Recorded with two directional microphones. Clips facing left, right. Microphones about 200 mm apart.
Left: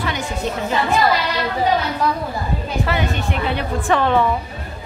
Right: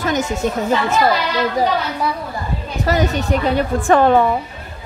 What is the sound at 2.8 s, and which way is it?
A woman's voice, 40° right (ahead or behind).